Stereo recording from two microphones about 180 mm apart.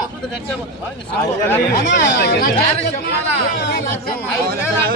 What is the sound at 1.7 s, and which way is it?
Speech, 70° left (ahead or behind).